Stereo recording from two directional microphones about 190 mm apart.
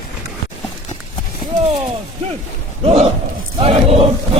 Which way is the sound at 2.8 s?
35° right (ahead or behind).